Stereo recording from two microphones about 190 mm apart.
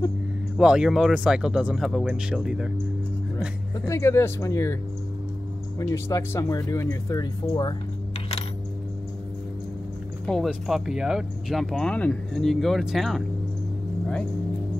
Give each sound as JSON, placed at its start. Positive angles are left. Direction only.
{"t": 0.6, "sound": "speech", "side_deg": -5}
{"t": 3.3, "sound": "speech", "side_deg": 15}
{"t": 5.8, "sound": "speech", "side_deg": 15}
{"t": 10.2, "sound": "speech", "side_deg": 0}